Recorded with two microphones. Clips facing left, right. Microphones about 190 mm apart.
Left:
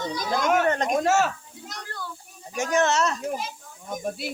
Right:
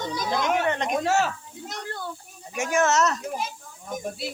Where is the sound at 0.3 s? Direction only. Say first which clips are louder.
Left 3 dB; 45° left (ahead or behind).